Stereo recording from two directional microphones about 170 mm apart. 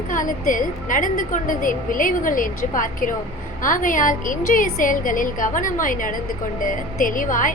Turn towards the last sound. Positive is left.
turn(degrees=50)  # may be behind; listen again after turning